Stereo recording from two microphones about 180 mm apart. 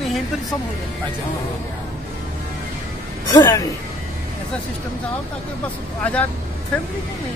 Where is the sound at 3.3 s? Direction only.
20° left (ahead or behind).